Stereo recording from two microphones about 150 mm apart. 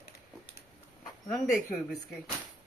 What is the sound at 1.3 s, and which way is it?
Speech, centre (ahead or behind).